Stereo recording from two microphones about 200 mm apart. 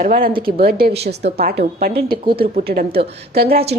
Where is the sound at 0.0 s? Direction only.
45° right (ahead or behind).